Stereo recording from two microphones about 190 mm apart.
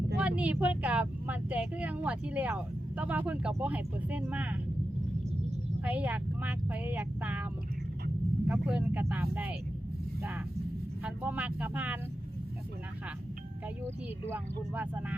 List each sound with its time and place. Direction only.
0.2 s speech: 5° right (ahead or behind)
5.8 s speech: 10° right (ahead or behind)
8.4 s speech: 5° right (ahead or behind)
11.0 s speech: 10° right (ahead or behind)
13.8 s speech: 10° right (ahead or behind)